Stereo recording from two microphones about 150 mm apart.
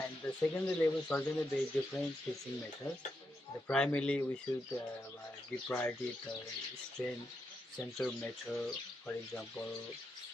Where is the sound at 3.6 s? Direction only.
5° left (ahead or behind).